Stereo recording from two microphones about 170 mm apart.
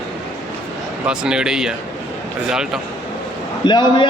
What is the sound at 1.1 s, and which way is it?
Speech, 5° right (ahead or behind).